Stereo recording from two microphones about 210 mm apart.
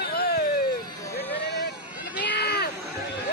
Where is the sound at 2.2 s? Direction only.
50° left (ahead or behind).